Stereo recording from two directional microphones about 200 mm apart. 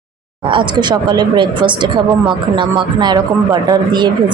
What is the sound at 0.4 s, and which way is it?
Speech, 25° right (ahead or behind).